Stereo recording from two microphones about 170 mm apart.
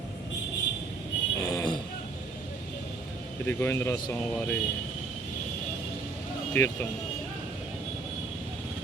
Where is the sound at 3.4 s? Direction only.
15° left (ahead or behind).